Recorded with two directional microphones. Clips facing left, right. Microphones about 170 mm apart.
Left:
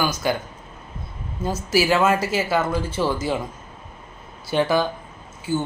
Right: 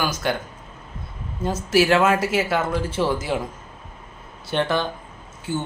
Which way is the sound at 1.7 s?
5° left (ahead or behind).